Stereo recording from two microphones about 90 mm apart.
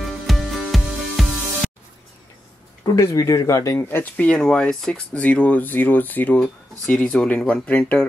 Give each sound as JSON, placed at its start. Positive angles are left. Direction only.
{"t": 0.3, "sound": "music", "side_deg": 0}
{"t": 3.0, "sound": "speech", "side_deg": 35}
{"t": 3.9, "sound": "speech", "side_deg": 20}